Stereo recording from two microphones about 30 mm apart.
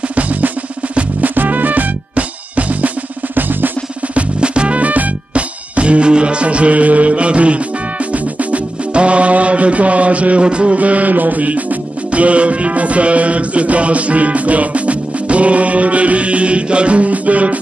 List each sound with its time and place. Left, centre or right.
0.1 s drum: right
1.2 s music: right
2.1 s music: right
3.3 s music: right
4.4 s music: right
4.7 s music: right
5.3 s music: right
10.4 s music: right
10.8 s music: right